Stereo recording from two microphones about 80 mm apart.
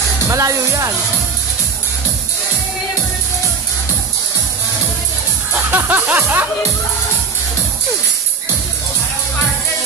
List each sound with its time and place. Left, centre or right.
0.3 s speech: right
5.5 s speech: right